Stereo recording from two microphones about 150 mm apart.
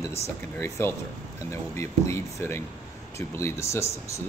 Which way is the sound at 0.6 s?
15° left (ahead or behind).